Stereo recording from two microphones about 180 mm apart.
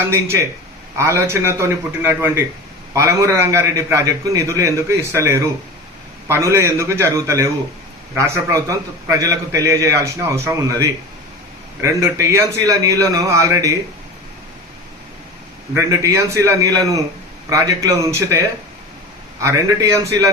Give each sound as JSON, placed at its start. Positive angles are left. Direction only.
{"t": 0.0, "sound": "a man's voice", "side_deg": -15}
{"t": 15.7, "sound": "a man's voice", "side_deg": -15}